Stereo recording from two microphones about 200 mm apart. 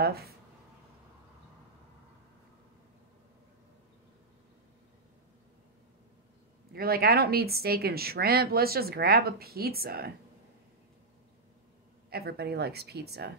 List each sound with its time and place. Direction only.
0.0 s speech: 50° right (ahead or behind)
6.7 s speech: 50° right (ahead or behind)
12.1 s speech: 50° right (ahead or behind)